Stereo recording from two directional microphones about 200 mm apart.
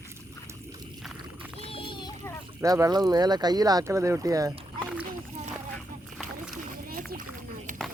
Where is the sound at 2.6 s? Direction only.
20° right (ahead or behind).